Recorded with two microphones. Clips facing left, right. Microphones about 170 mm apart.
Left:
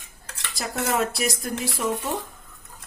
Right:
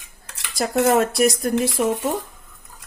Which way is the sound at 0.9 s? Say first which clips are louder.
Right 7 dB; 50° right (ahead or behind).